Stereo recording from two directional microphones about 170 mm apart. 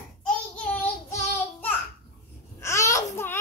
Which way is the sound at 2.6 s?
15° left (ahead or behind).